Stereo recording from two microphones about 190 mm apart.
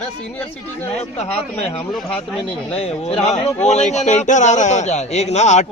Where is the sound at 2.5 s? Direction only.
30° left (ahead or behind).